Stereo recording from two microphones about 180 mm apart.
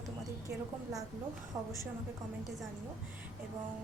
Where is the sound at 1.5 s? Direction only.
20° right (ahead or behind).